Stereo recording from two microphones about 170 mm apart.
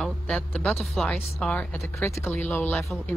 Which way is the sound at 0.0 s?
5° left (ahead or behind).